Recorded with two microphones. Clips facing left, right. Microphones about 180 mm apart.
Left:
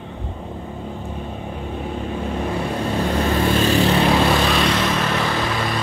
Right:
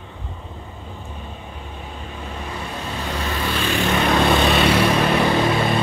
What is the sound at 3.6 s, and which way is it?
Vehicle, 40° left (ahead or behind).